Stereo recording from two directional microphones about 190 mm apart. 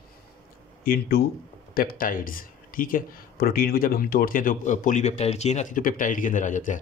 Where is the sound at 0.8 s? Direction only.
50° left (ahead or behind).